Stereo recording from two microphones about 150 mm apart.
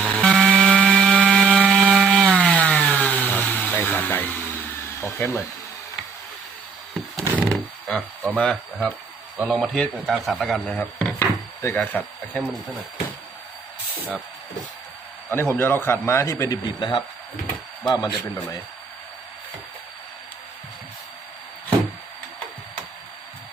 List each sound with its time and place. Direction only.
0.0 s tools: 5° left (ahead or behind)
1.7 s chainsaw: 5° left (ahead or behind)
4.9 s hair dryer: 20° left (ahead or behind)
7.3 s a sound: 5° left (ahead or behind)
9.5 s speech: 5° left (ahead or behind)
15.3 s a man's voice: 15° left (ahead or behind)